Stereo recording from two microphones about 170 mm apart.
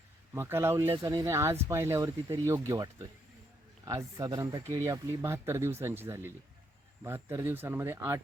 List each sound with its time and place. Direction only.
0.3 s speech: 15° right (ahead or behind)